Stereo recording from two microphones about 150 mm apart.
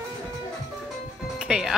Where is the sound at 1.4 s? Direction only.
5° right (ahead or behind).